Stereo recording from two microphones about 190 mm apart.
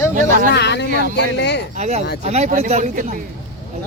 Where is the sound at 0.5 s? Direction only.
65° left (ahead or behind).